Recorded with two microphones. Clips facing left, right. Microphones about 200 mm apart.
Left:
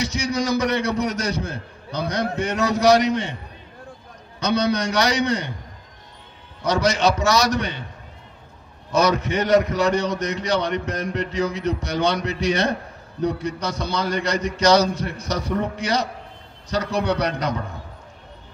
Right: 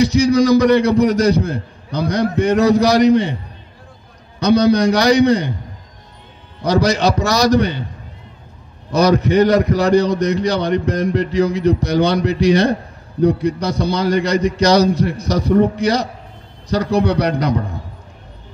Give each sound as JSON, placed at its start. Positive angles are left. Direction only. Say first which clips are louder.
{"t": 0.0, "sound": "a man's voice", "louder": "right 11 dB", "side_deg": -35}
{"t": 4.4, "sound": "a man's voice", "louder": "right 8 dB", "side_deg": -35}
{"t": 6.6, "sound": "a man's voice", "louder": "right 4 dB", "side_deg": -35}
{"t": 8.9, "sound": "a man's voice", "louder": "right 7 dB", "side_deg": -35}